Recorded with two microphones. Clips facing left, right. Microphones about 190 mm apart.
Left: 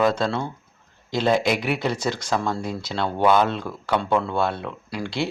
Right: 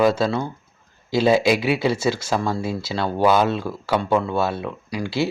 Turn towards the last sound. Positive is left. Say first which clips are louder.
# right 3 dB
turn(degrees=-5)  # may be behind; listen again after turning